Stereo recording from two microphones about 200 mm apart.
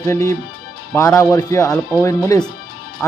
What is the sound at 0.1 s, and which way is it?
Speech, 15° left (ahead or behind).